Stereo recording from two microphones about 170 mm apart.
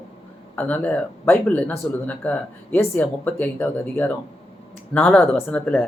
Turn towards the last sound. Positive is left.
turn(degrees=10)  # may be behind; listen again after turning